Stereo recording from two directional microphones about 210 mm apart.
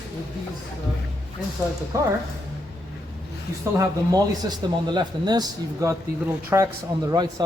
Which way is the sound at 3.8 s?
15° right (ahead or behind).